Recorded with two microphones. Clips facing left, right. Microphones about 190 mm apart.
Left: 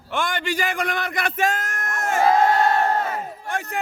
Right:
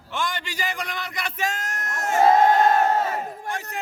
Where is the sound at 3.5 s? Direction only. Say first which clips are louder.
Left 7 dB; 55° left (ahead or behind).